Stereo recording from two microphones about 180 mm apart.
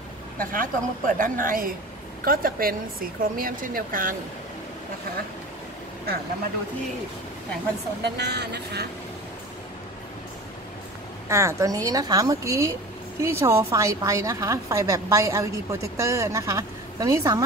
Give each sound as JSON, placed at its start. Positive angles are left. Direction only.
{"t": 0.4, "sound": "a woman's voice", "side_deg": -50}
{"t": 8.0, "sound": "speech", "side_deg": -65}
{"t": 11.2, "sound": "a woman's voice", "side_deg": -15}